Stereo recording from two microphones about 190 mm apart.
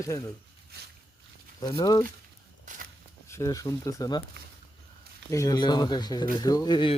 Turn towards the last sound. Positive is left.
turn(degrees=25)  # may be behind; listen again after turning